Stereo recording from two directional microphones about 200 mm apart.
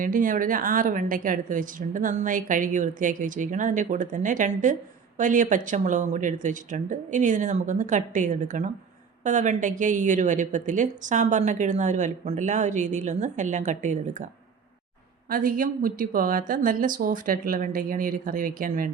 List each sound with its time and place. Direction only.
0.0 s a woman's voice: 45° right (ahead or behind)
15.3 s a woman's voice: 45° right (ahead or behind)